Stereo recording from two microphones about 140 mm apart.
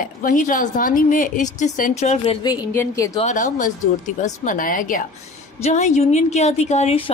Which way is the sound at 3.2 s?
60° left (ahead or behind).